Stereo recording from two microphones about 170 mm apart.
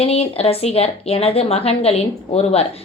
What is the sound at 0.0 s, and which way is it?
Speech, 35° left (ahead or behind).